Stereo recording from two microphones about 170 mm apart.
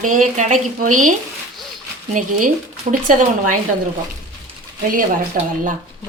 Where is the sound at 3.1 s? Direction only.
50° right (ahead or behind).